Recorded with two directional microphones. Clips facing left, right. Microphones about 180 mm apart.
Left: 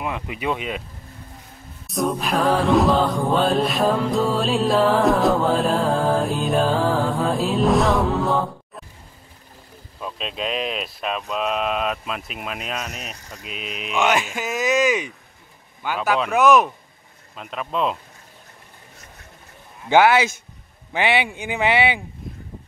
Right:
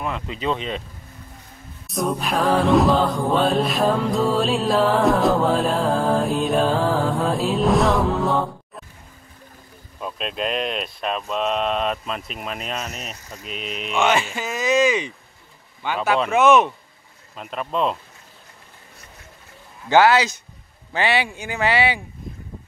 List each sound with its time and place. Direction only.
0.0 s speech: 15° left (ahead or behind)
1.9 s music: centre (ahead or behind)
9.9 s music: centre (ahead or behind)
15.8 s music: 5° left (ahead or behind)
20.9 s speech: 15° left (ahead or behind)